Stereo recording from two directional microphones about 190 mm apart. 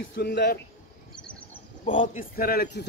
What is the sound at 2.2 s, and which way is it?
Speech, 50° left (ahead or behind).